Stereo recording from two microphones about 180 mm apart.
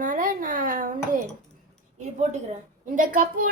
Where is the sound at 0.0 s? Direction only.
45° right (ahead or behind).